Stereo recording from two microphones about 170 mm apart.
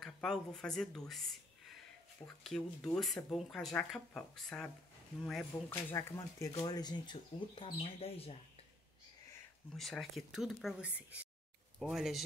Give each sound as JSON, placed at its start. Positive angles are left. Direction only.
{"t": 0.0, "sound": "speech", "side_deg": 0}
{"t": 9.8, "sound": "speech", "side_deg": 0}